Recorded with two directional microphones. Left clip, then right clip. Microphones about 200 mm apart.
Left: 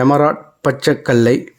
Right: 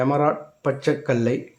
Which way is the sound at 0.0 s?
40° left (ahead or behind).